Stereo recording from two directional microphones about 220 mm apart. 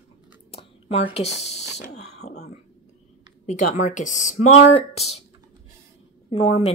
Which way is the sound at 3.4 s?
35° left (ahead or behind).